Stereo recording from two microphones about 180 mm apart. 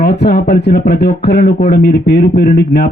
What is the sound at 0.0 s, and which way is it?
A woman's voice, 65° left (ahead or behind).